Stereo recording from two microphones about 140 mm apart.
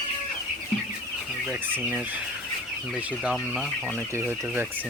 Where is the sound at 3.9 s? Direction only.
15° right (ahead or behind).